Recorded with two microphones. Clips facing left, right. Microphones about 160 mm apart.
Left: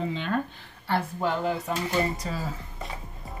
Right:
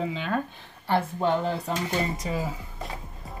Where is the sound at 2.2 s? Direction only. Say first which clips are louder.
Right 3 dB; 20° right (ahead or behind).